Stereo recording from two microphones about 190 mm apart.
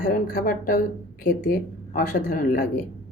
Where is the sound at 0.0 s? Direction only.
45° left (ahead or behind).